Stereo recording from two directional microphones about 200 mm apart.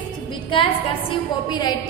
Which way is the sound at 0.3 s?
25° left (ahead or behind).